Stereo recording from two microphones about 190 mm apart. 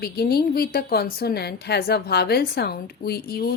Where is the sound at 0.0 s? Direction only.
55° left (ahead or behind).